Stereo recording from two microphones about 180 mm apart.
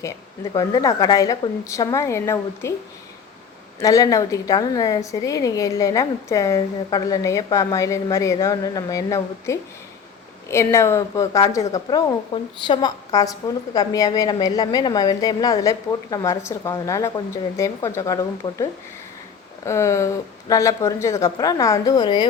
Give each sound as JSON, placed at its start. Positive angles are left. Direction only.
{"t": 0.5, "sound": "a woman's voice", "side_deg": 20}
{"t": 3.8, "sound": "a woman's voice", "side_deg": 20}